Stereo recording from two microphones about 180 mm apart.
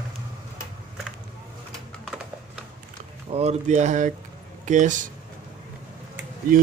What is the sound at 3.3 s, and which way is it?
Speech, 35° right (ahead or behind).